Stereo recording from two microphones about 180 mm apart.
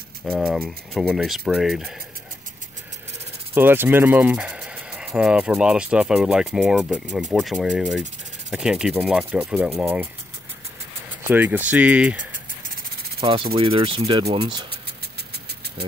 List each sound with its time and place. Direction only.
0.4 s speech: 5° right (ahead or behind)
3.5 s speech: 10° right (ahead or behind)
11.2 s speech: 10° right (ahead or behind)
13.2 s speech: 30° right (ahead or behind)